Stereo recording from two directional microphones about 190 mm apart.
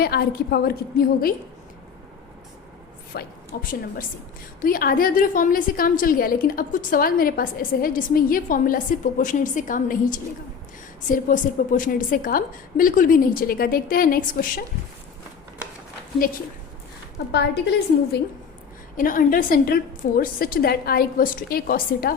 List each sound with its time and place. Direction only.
0.0 s a woman's voice: 55° left (ahead or behind)
3.1 s a woman's voice: 50° left (ahead or behind)
17.3 s a woman's voice: 60° left (ahead or behind)
18.9 s a woman's voice: 45° left (ahead or behind)